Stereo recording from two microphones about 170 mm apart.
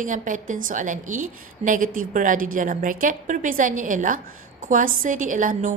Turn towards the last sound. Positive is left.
turn(degrees=-50)  # may be behind; listen again after turning